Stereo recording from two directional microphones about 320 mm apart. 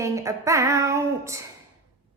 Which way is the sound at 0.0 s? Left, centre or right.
Centre.